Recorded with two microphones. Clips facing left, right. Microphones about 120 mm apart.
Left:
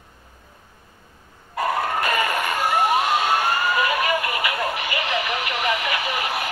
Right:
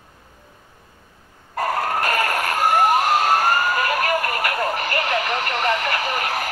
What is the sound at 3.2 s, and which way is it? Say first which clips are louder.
Vehicle: right 3 dB; 40° right (ahead or behind).